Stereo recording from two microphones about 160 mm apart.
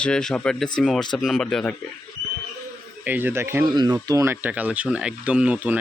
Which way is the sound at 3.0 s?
10° right (ahead or behind).